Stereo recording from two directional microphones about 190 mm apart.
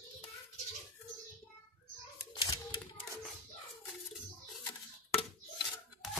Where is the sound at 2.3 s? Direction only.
25° left (ahead or behind).